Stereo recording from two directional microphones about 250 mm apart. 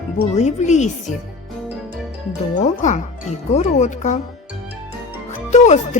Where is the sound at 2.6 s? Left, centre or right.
Left.